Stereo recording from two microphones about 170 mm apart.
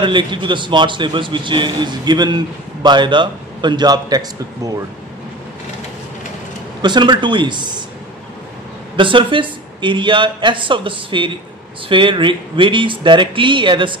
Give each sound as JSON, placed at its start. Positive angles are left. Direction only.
{"t": 0.0, "sound": "a man's voice", "side_deg": -30}
{"t": 6.8, "sound": "a man's voice", "side_deg": -25}
{"t": 8.9, "sound": "a man's voice", "side_deg": -30}